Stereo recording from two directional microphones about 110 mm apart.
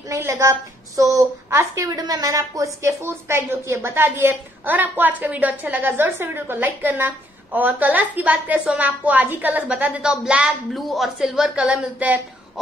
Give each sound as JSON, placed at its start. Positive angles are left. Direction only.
{"t": 0.1, "sound": "a woman's voice", "side_deg": -25}